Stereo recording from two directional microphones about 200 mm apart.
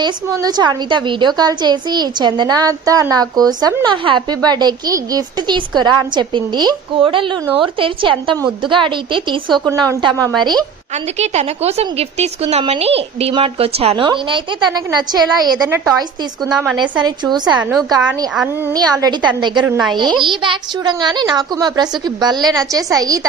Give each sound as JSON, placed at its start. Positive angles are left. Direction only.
{"t": 0.0, "sound": "a woman's voice", "side_deg": -20}
{"t": 10.9, "sound": "a woman's voice", "side_deg": -35}
{"t": 17.3, "sound": "a woman's voice", "side_deg": -20}